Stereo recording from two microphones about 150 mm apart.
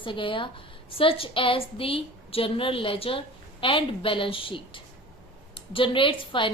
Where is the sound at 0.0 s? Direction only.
35° left (ahead or behind).